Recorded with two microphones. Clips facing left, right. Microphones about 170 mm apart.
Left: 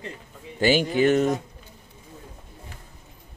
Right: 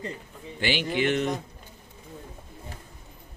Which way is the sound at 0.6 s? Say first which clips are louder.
Left 6 dB; 40° left (ahead or behind).